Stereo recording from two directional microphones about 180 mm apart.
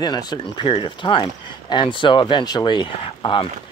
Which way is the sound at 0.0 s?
25° left (ahead or behind).